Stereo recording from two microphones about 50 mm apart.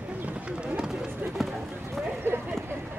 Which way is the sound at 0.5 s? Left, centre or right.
Centre.